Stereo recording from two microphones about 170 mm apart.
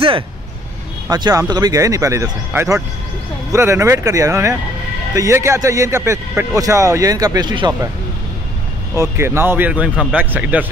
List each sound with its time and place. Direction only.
1.0 s speech: 20° right (ahead or behind)
8.9 s speech: 15° right (ahead or behind)